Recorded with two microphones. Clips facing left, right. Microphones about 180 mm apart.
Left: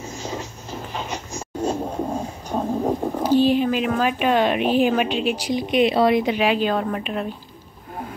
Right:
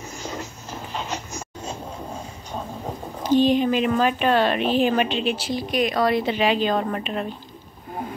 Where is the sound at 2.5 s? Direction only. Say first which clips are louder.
Left 10 dB; 40° left (ahead or behind).